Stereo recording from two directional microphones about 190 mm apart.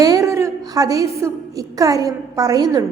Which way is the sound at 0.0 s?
20° right (ahead or behind).